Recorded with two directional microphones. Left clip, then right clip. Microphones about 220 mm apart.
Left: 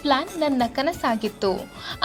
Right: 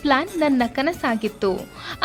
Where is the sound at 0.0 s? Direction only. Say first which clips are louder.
Right 2 dB; 25° right (ahead or behind).